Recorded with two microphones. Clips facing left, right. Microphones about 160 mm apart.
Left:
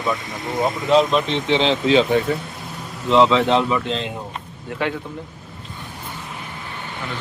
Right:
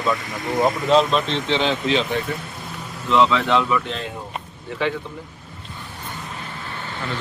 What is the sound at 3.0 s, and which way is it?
Speech, 30° left (ahead or behind).